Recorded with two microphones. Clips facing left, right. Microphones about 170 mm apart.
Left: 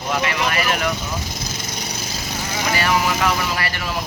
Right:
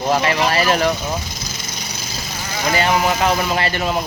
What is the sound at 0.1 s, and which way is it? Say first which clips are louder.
Speech: right 4 dB; 35° right (ahead or behind).